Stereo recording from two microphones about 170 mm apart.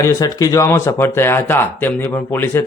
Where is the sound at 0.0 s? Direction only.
20° left (ahead or behind).